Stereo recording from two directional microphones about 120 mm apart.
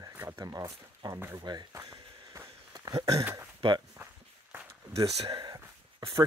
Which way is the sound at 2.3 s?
25° right (ahead or behind).